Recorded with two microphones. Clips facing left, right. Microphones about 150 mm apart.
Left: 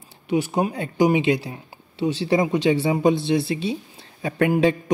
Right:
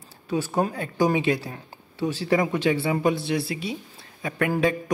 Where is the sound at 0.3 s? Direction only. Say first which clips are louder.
Left 3 dB; 15° left (ahead or behind).